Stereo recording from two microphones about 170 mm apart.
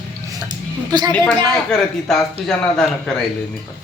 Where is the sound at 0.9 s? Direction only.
25° right (ahead or behind).